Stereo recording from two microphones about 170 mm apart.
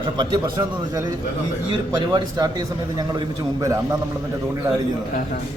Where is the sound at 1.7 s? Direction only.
25° right (ahead or behind).